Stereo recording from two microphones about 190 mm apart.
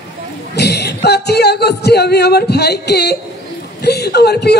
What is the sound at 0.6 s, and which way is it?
A woman's voice, 60° left (ahead or behind).